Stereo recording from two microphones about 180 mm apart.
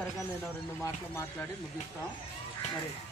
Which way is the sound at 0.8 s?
15° left (ahead or behind).